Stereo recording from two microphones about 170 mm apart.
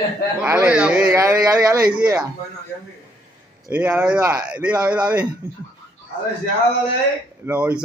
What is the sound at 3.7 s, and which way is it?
Speech, 10° right (ahead or behind).